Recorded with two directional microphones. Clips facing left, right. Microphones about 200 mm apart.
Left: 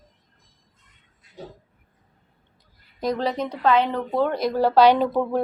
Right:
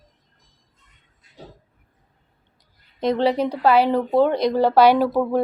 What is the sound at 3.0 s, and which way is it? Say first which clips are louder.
Speech: right 5 dB; 25° right (ahead or behind).